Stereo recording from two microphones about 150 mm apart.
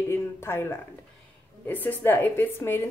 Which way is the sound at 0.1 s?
15° left (ahead or behind).